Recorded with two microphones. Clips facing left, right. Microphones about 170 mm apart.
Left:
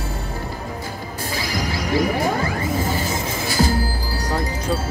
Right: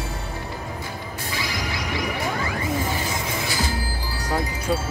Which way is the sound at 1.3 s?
35° left (ahead or behind).